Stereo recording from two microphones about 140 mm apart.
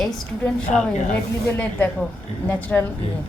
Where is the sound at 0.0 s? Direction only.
5° left (ahead or behind).